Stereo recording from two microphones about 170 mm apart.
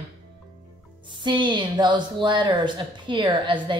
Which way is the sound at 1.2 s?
25° right (ahead or behind).